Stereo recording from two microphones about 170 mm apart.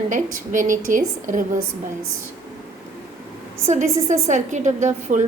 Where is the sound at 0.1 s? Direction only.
50° right (ahead or behind).